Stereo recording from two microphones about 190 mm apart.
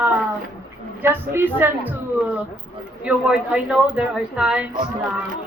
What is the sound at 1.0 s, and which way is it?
Speech, 10° right (ahead or behind).